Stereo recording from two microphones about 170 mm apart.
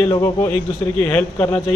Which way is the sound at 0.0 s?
15° left (ahead or behind).